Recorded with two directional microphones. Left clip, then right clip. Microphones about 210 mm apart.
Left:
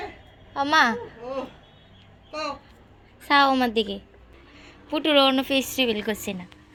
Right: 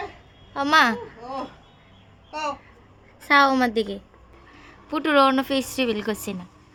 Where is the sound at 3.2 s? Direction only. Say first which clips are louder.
Right 2 dB; 10° right (ahead or behind).